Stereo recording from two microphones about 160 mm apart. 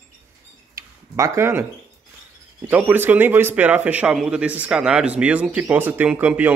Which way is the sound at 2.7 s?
10° right (ahead or behind).